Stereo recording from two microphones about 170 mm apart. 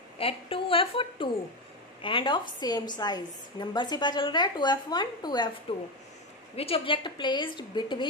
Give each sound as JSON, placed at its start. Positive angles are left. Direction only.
{"t": 0.2, "sound": "a woman's voice", "side_deg": 35}
{"t": 6.5, "sound": "a woman's voice", "side_deg": 35}